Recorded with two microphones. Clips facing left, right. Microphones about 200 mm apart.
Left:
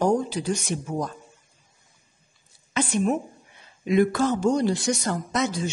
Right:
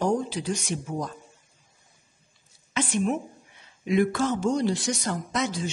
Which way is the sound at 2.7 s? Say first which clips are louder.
Left 2 dB; 40° left (ahead or behind).